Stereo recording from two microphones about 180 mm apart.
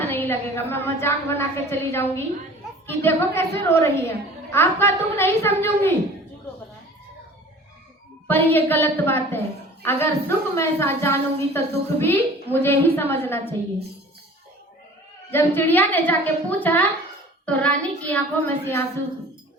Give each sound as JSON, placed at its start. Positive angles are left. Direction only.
{"t": 0.0, "sound": "a woman's voice", "side_deg": 10}
{"t": 8.3, "sound": "a woman's voice", "side_deg": 10}
{"t": 15.3, "sound": "a woman's voice", "side_deg": 10}